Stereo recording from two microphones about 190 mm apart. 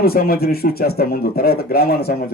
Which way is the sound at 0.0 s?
55° left (ahead or behind).